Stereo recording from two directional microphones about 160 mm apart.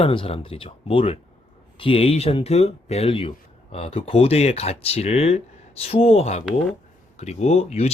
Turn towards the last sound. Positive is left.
turn(degrees=40)  # may be behind; listen again after turning